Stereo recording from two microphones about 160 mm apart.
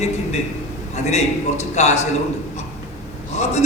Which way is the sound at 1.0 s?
45° left (ahead or behind).